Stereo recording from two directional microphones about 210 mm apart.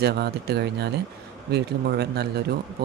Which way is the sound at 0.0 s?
50° right (ahead or behind).